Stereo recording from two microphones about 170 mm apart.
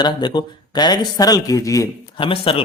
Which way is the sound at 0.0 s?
25° left (ahead or behind).